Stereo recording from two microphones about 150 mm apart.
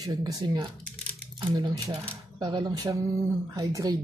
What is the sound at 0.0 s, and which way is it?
A woman's voice, 25° right (ahead or behind).